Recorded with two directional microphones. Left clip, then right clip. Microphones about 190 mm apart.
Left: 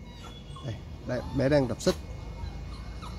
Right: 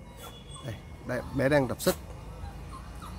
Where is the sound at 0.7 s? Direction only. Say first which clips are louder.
Even; 5° right (ahead or behind).